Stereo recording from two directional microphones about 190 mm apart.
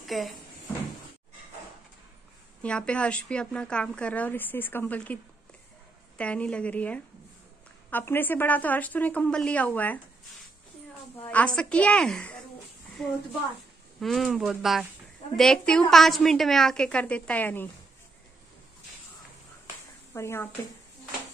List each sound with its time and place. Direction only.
0.0 s speech: centre (ahead or behind)
2.6 s a woman's voice: 5° left (ahead or behind)
11.2 s a woman's voice: 5° left (ahead or behind)
20.2 s a woman's voice: 15° left (ahead or behind)